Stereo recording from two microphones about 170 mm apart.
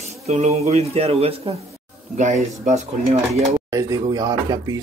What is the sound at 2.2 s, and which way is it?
Speech, 45° right (ahead or behind).